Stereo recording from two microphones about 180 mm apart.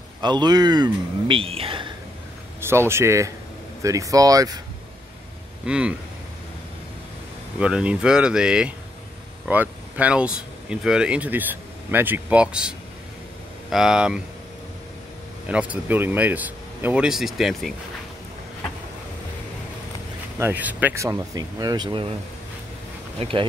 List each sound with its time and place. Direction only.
0.2 s speech: 25° right (ahead or behind)
2.6 s speech: 15° right (ahead or behind)
5.7 s speech: 5° right (ahead or behind)
7.5 s speech: 5° right (ahead or behind)
15.4 s speech: 5° right (ahead or behind)
20.3 s speech: 10° right (ahead or behind); by 22.1 s 25° right (ahead or behind)
23.1 s speech: 30° right (ahead or behind)